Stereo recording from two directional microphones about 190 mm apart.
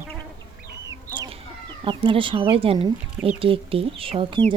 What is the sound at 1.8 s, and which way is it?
Speech, 25° right (ahead or behind).